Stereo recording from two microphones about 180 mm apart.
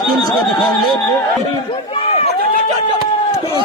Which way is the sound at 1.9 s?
35° left (ahead or behind).